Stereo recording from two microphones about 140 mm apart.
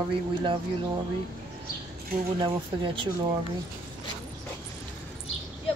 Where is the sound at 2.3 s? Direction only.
35° right (ahead or behind).